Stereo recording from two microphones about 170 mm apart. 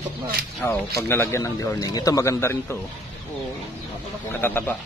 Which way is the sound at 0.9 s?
15° left (ahead or behind).